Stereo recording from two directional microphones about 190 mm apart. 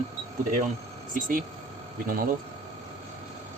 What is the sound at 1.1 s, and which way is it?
Speech, 45° right (ahead or behind).